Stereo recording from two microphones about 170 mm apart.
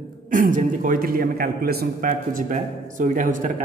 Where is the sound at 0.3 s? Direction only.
50° right (ahead or behind).